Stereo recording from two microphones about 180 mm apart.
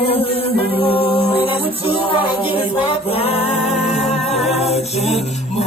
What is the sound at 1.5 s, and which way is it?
A capella, 30° left (ahead or behind).